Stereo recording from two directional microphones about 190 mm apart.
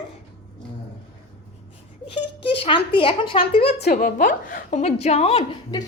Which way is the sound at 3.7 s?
60° left (ahead or behind).